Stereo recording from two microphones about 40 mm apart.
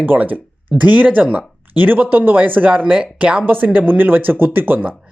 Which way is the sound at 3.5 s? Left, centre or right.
Right.